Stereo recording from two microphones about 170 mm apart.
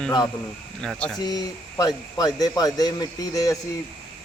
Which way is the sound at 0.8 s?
5° left (ahead or behind).